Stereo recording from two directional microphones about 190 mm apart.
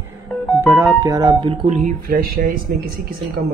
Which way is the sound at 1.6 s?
45° right (ahead or behind).